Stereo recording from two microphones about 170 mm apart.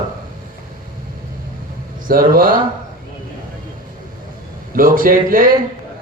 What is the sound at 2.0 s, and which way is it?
Speech, 55° right (ahead or behind).